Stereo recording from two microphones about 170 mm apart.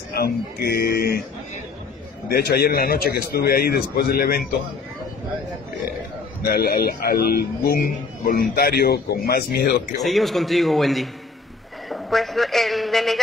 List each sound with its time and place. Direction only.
0.1 s a man's voice: 65° left (ahead or behind)
2.2 s a man's voice: 65° left (ahead or behind)
6.5 s a man's voice: 65° left (ahead or behind)
9.9 s a man's voice: centre (ahead or behind)